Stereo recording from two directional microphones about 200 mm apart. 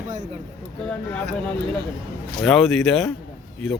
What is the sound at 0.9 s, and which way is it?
Speech, 5° left (ahead or behind).